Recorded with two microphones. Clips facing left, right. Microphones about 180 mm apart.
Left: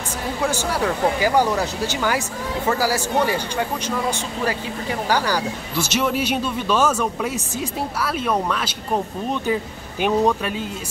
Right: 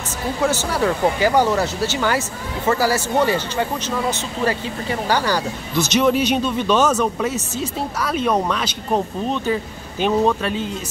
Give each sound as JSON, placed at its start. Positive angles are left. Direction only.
{"t": 0.8, "sound": "speech", "side_deg": 10}